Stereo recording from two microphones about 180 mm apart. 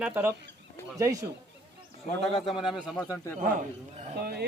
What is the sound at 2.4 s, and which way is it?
Speech, centre (ahead or behind).